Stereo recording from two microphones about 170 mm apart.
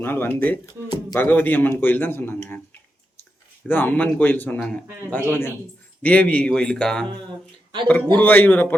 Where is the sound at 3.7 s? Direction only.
10° left (ahead or behind).